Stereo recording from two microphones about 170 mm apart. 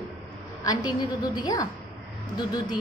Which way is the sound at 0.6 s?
20° left (ahead or behind).